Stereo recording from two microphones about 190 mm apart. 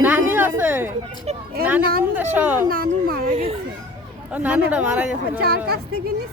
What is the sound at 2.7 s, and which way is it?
Speech, 50° right (ahead or behind).